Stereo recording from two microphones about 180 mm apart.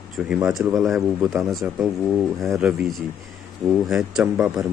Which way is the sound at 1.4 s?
Centre (ahead or behind).